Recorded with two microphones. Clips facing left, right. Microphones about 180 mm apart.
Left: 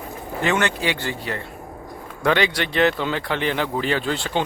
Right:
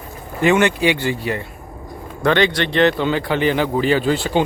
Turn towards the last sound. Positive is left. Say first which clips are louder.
# right 6 dB
turn(degrees=-5)  # may be behind; listen again after turning